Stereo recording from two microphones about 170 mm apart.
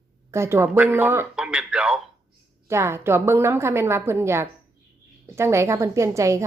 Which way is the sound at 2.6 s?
15° right (ahead or behind).